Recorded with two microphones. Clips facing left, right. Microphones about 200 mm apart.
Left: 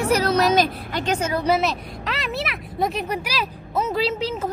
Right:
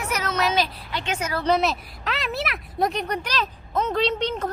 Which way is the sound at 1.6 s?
Centre (ahead or behind).